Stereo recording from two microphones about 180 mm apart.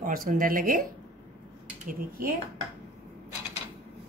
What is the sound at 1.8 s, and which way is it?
Speech, 55° right (ahead or behind).